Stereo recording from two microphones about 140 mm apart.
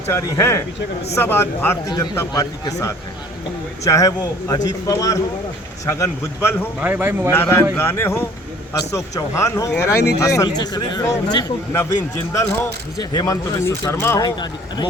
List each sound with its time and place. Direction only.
0.1 s a man's voice: 20° left (ahead or behind)
6.7 s a man's voice: 10° right (ahead or behind)
7.3 s a man's voice: 15° left (ahead or behind)
14.3 s speech: 30° left (ahead or behind)